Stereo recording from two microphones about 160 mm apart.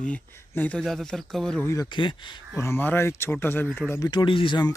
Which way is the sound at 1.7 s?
25° left (ahead or behind).